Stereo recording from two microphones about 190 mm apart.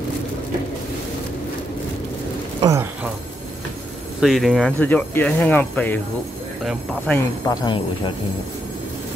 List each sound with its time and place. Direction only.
2.6 s speech: 15° right (ahead or behind)
4.2 s speech: centre (ahead or behind)
7.4 s speech: 25° left (ahead or behind)